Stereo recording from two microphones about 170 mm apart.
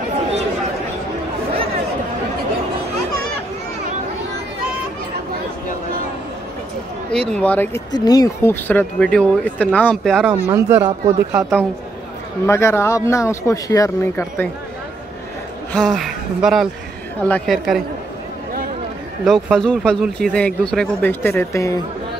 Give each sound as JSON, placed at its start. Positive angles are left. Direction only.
{"t": 7.1, "sound": "speech", "side_deg": 5}
{"t": 7.9, "sound": "speech", "side_deg": 25}
{"t": 10.5, "sound": "speech", "side_deg": -15}
{"t": 12.4, "sound": "speech", "side_deg": 15}
{"t": 15.7, "sound": "speech", "side_deg": 0}
{"t": 19.2, "sound": "speech", "side_deg": 0}